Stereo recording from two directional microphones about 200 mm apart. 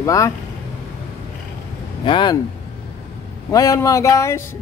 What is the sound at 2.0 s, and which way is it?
Speech, 25° left (ahead or behind).